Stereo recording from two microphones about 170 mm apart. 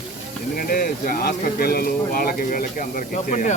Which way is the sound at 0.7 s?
60° left (ahead or behind).